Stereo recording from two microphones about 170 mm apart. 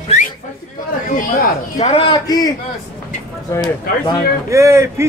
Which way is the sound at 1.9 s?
35° left (ahead or behind).